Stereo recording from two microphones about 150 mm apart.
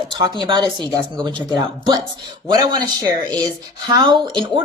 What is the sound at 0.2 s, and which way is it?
A woman's voice, 30° right (ahead or behind).